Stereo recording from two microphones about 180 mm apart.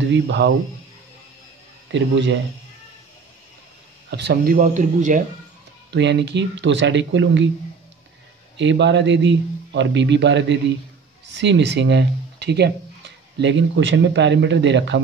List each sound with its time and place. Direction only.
0.1 s speech: 75° right (ahead or behind)
1.9 s a man's voice: 85° right
4.1 s speech: 60° right (ahead or behind); by 5.2 s 45° right (ahead or behind)
5.9 s a man's voice: 75° right (ahead or behind)
8.5 s a man's voice: 80° right